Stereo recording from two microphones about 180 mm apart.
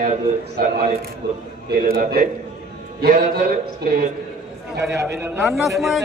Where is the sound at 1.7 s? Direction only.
55° right (ahead or behind).